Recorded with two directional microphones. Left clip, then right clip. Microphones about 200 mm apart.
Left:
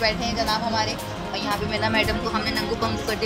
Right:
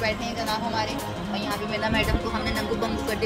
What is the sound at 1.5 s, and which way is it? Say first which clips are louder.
Speech: left 3 dB; centre (ahead or behind).